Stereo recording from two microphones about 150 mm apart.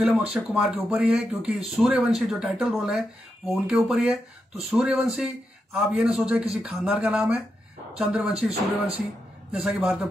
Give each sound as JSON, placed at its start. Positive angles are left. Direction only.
{"t": 0.0, "sound": "speech", "side_deg": -10}
{"t": 9.5, "sound": "speech", "side_deg": -5}